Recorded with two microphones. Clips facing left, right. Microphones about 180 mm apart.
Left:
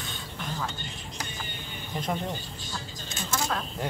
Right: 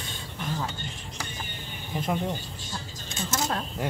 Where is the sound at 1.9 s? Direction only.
5° right (ahead or behind).